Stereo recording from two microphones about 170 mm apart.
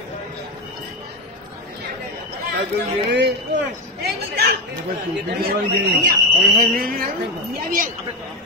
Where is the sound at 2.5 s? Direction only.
80° right.